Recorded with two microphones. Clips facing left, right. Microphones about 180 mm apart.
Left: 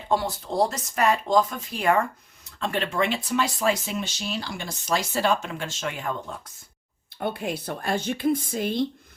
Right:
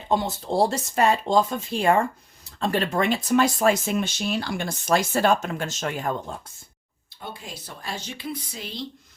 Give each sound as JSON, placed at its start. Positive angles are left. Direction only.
{"t": 0.1, "sound": "speech", "side_deg": -20}
{"t": 2.6, "sound": "speech", "side_deg": -40}
{"t": 7.2, "sound": "speech", "side_deg": 60}